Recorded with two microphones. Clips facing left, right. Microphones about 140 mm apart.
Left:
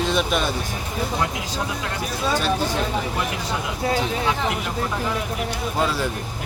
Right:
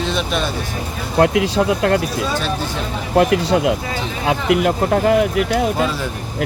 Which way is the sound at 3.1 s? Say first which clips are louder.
Right 12 dB; 75° right (ahead or behind).